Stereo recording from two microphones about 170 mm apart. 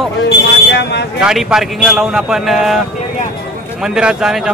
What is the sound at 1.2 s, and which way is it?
A man's voice, 5° right (ahead or behind).